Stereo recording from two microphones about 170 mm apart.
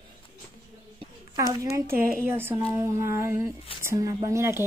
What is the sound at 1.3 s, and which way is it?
A woman's voice, 20° right (ahead or behind).